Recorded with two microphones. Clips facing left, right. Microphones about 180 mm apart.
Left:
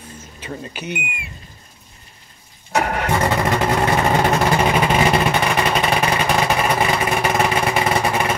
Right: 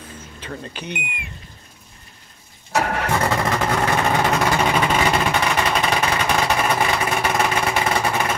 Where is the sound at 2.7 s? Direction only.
20° left (ahead or behind).